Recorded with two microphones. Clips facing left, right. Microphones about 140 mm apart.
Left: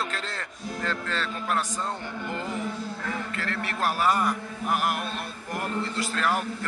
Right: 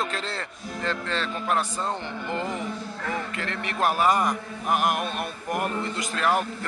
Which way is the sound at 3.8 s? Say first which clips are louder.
Right 3 dB; 15° right (ahead or behind).